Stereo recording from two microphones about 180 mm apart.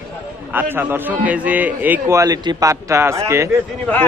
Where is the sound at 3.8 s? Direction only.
10° left (ahead or behind).